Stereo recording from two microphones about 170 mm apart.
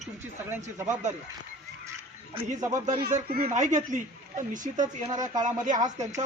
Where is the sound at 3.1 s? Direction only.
60° right (ahead or behind).